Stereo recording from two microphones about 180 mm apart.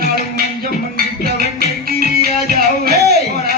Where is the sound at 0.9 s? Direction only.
55° right (ahead or behind).